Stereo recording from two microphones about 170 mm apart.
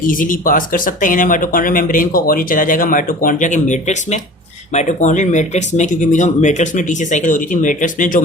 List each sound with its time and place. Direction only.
0.1 s speech: 50° left (ahead or behind)